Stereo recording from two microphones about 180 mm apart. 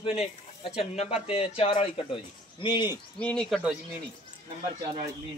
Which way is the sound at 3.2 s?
5° left (ahead or behind).